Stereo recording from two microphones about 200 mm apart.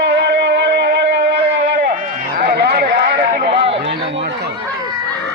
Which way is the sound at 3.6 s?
65° right (ahead or behind).